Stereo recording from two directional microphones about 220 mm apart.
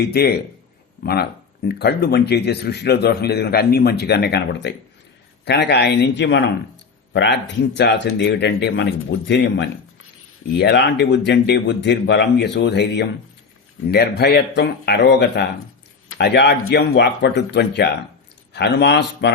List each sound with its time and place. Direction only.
0.1 s speech: 45° left (ahead or behind)